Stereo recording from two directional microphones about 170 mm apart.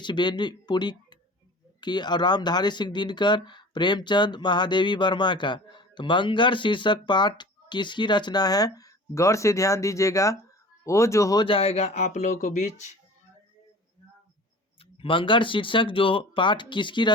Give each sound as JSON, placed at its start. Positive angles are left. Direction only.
{"t": 0.0, "sound": "speech", "side_deg": 25}
{"t": 11.4, "sound": "speech", "side_deg": 35}
{"t": 14.9, "sound": "speech", "side_deg": 30}